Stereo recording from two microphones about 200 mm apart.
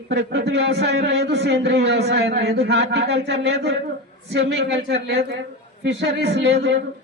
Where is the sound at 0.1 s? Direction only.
60° right (ahead or behind).